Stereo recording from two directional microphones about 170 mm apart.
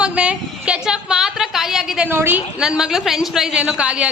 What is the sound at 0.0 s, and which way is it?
A woman's voice, 5° right (ahead or behind).